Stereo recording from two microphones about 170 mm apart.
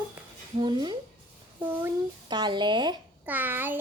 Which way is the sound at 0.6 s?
25° right (ahead or behind).